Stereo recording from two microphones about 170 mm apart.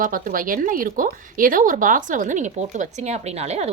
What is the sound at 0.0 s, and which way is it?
Speech, 55° right (ahead or behind).